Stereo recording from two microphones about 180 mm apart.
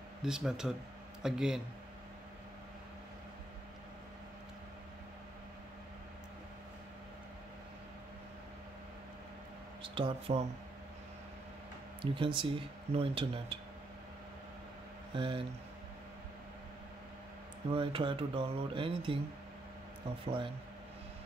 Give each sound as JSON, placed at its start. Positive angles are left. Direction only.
{"t": 0.2, "sound": "speech", "side_deg": -5}
{"t": 9.8, "sound": "speech", "side_deg": -30}
{"t": 12.0, "sound": "speech", "side_deg": -30}
{"t": 15.1, "sound": "speech", "side_deg": -30}
{"t": 17.6, "sound": "speech", "side_deg": -30}